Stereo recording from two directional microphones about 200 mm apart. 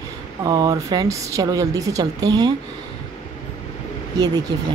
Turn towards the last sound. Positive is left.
turn(degrees=-20)  # may be behind; listen again after turning